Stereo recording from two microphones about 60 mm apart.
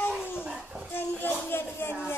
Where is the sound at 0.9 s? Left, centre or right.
Left.